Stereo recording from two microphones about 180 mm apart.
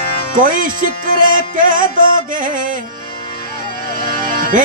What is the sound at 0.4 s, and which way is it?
Music, 50° right (ahead or behind).